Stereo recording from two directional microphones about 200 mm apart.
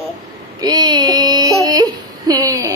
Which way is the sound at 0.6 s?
20° right (ahead or behind).